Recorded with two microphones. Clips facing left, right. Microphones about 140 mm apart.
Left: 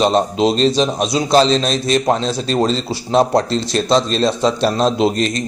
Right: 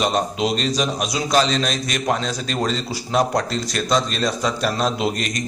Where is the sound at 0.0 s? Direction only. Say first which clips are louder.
Left 6 dB; 25° left (ahead or behind).